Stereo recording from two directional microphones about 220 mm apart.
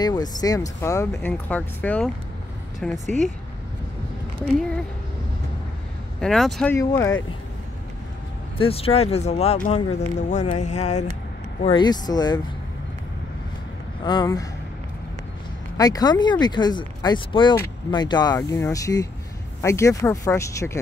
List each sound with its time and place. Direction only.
0.0 s speech: 20° left (ahead or behind); by 3.0 s 5° left (ahead or behind)
4.5 s speech: 5° left (ahead or behind)
6.2 s speech: centre (ahead or behind)
8.5 s speech: 25° left (ahead or behind)
11.6 s speech: 20° left (ahead or behind)
14.0 s speech: 20° left (ahead or behind)
15.8 s speech: 15° left (ahead or behind)